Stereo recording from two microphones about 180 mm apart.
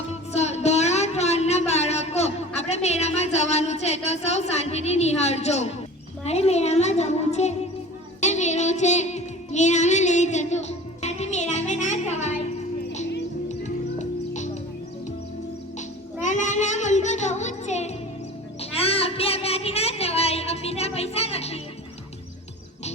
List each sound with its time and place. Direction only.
0.3 s a sound: 40° left (ahead or behind)
8.2 s music: 40° left (ahead or behind)
14.0 s music: 40° left (ahead or behind)
16.2 s music: 40° left (ahead or behind)
18.6 s child singing: 35° left (ahead or behind)